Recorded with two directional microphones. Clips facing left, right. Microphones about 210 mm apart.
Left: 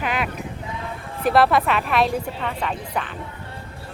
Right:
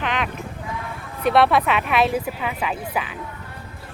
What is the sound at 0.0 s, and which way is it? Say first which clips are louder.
Clip-clop: even; 5° left (ahead or behind).